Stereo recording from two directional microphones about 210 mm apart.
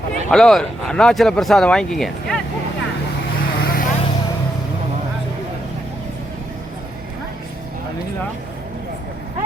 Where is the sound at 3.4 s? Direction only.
45° left (ahead or behind).